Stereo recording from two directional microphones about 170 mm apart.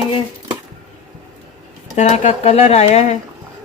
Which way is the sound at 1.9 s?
40° left (ahead or behind).